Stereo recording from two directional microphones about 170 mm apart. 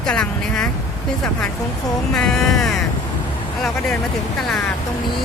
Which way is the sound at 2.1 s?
5° left (ahead or behind).